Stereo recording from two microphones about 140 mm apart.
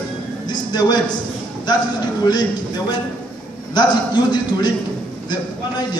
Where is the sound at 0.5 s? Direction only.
30° left (ahead or behind).